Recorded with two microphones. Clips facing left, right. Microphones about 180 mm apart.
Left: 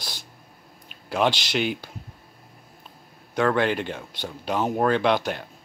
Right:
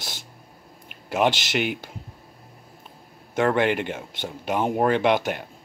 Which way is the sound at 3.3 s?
15° right (ahead or behind).